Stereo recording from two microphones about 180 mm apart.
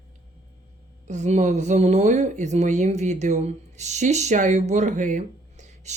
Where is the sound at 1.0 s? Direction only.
40° right (ahead or behind).